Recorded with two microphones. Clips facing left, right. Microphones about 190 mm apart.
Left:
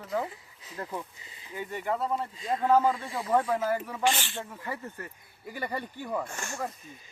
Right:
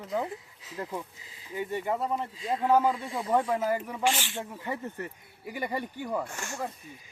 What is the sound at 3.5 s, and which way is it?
Speech, 15° right (ahead or behind).